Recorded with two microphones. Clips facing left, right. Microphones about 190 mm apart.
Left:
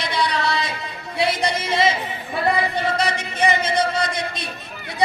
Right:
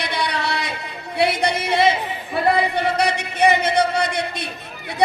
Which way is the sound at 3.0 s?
60° right (ahead or behind).